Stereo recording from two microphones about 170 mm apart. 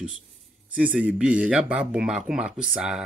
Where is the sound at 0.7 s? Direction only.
5° right (ahead or behind).